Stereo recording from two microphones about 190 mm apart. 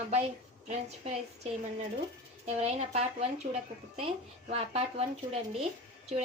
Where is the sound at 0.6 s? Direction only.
35° right (ahead or behind).